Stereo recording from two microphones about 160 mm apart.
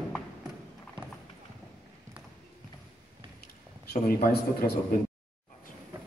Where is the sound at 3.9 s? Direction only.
75° left (ahead or behind).